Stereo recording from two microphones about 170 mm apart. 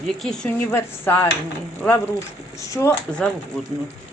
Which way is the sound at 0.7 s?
15° left (ahead or behind).